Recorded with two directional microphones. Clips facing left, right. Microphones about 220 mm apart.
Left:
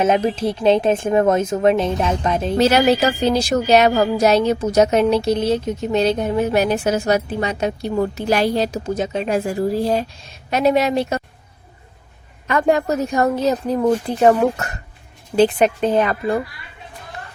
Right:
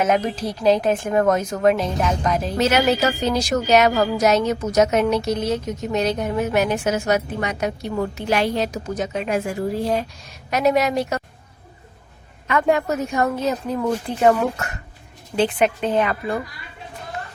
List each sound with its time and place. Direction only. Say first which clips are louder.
0.0 s a woman's voice: left 3 dB; 25° left (ahead or behind)
12.5 s a woman's voice: left 2 dB; 35° left (ahead or behind)